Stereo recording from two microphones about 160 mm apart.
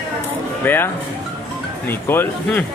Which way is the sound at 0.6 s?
15° left (ahead or behind).